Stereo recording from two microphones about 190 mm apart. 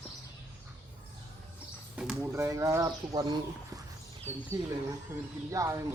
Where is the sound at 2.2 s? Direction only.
15° right (ahead or behind).